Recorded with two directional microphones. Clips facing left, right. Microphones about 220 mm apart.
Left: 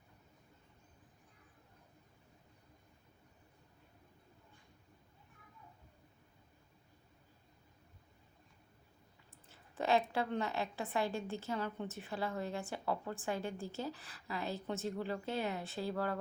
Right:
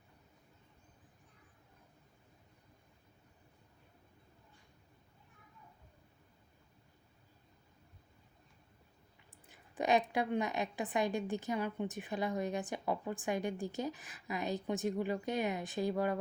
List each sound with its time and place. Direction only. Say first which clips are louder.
9.5 s a woman's voice: right 2 dB; 15° right (ahead or behind)